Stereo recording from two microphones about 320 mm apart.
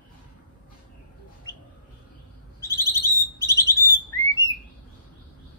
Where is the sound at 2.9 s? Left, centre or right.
Centre.